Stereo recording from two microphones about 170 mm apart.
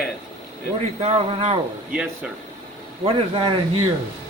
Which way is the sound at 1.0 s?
35° right (ahead or behind).